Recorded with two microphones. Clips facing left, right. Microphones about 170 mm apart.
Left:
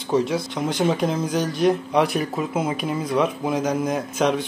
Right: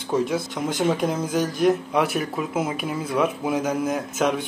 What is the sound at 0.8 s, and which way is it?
Speech, centre (ahead or behind).